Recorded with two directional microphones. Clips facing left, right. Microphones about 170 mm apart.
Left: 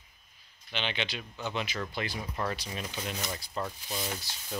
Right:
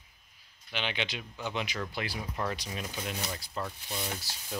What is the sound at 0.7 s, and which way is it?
Speech, 10° right (ahead or behind).